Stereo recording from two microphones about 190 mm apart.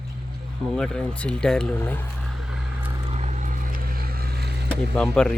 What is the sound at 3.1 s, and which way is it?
Vehicle, 35° right (ahead or behind).